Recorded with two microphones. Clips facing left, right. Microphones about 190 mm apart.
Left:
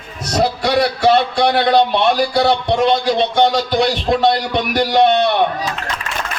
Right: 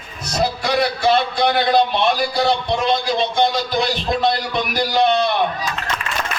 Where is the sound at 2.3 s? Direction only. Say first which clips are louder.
Left 4 dB; 70° left (ahead or behind).